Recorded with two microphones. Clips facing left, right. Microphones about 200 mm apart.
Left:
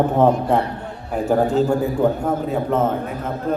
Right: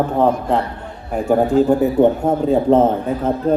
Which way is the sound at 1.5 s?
20° right (ahead or behind).